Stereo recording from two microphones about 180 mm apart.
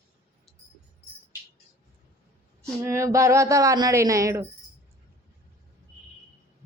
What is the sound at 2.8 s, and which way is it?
Speech, 15° right (ahead or behind).